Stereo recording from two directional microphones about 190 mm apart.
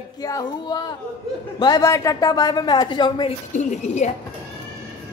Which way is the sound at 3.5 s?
40° left (ahead or behind).